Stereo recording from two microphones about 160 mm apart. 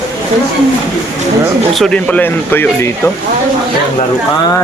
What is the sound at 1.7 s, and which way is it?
Speech, 5° left (ahead or behind).